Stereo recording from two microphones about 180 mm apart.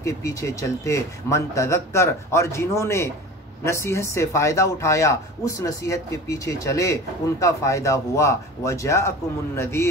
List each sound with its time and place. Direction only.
0.0 s speech: 15° left (ahead or behind)